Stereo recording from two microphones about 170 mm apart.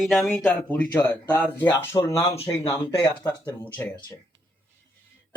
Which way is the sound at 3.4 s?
10° left (ahead or behind).